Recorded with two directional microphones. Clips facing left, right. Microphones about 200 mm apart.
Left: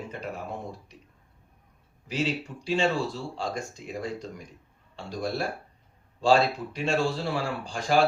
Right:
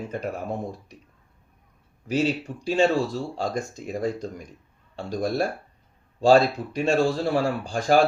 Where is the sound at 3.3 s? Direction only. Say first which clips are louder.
Right 5 dB; 45° right (ahead or behind).